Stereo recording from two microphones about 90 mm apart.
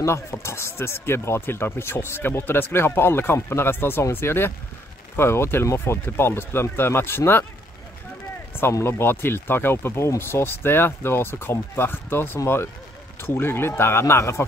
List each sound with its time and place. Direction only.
0.0 s speech: 30° left (ahead or behind)
8.5 s speech: 25° left (ahead or behind)